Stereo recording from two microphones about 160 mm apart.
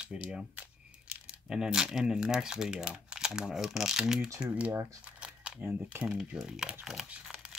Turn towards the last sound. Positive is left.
turn(degrees=-5)  # may be behind; listen again after turning